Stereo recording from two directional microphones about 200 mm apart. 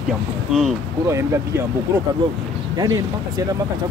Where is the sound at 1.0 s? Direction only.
15° right (ahead or behind).